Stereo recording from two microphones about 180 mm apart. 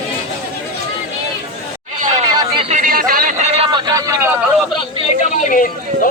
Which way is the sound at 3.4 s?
30° right (ahead or behind).